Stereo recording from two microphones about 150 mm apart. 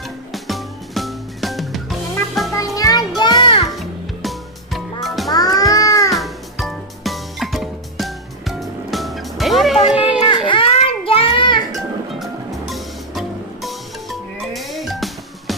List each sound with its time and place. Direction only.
0.3 s music: centre (ahead or behind)
2.5 s music: 20° left (ahead or behind)
3.7 s music: centre (ahead or behind)
5.3 s cat: 25° left (ahead or behind)
6.1 s music: centre (ahead or behind)
10.3 s child singing: 35° left (ahead or behind)
11.7 s music: centre (ahead or behind)